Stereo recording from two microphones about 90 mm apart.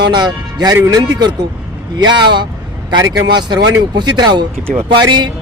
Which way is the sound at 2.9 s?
45° right (ahead or behind).